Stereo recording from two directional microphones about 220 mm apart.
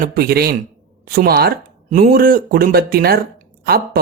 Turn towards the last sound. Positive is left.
turn(degrees=-45)  # may be behind; listen again after turning